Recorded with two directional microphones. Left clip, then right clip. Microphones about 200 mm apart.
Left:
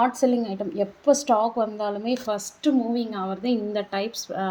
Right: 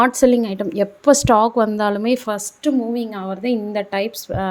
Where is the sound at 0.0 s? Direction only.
45° right (ahead or behind).